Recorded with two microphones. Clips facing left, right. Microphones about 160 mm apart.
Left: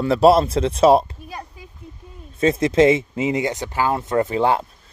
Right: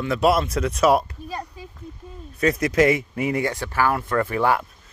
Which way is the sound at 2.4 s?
25° left (ahead or behind).